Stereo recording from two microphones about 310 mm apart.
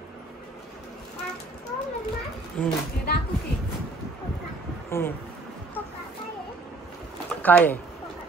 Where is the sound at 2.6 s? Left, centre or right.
Centre.